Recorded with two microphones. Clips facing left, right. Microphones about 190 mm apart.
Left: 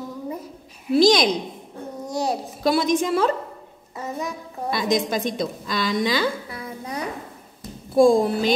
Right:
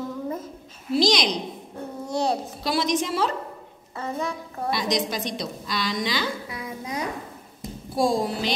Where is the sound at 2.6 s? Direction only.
50° left (ahead or behind).